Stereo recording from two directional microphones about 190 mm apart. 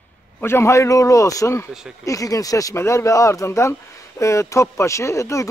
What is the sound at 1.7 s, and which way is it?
Speech, 5° right (ahead or behind).